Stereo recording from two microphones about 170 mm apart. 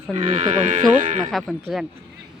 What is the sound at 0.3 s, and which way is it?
Speech, 45° right (ahead or behind).